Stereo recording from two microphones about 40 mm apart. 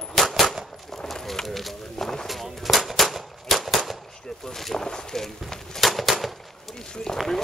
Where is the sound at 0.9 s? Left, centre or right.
Centre.